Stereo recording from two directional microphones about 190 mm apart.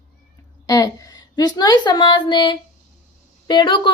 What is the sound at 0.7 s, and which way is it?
A woman's voice, 20° left (ahead or behind).